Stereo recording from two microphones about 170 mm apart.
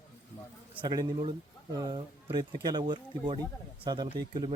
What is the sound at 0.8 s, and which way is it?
Speech, 25° right (ahead or behind).